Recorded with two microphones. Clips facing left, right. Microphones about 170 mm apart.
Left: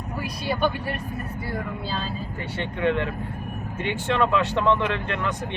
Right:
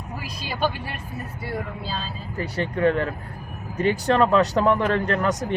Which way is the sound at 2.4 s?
40° right (ahead or behind).